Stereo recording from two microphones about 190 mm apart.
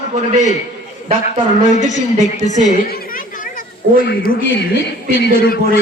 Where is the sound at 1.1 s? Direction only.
35° right (ahead or behind).